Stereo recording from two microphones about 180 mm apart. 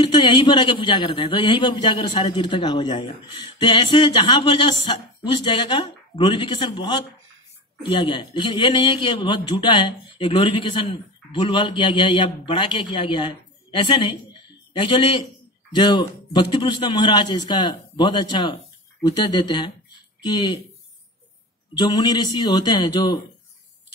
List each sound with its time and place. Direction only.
0.0 s a man's voice: 25° left (ahead or behind)
21.7 s a man's voice: 20° left (ahead or behind)